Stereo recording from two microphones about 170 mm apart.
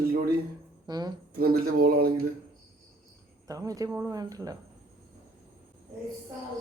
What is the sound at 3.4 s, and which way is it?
Speech, 20° right (ahead or behind).